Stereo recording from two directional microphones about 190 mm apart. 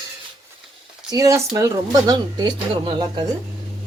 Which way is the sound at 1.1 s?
15° right (ahead or behind).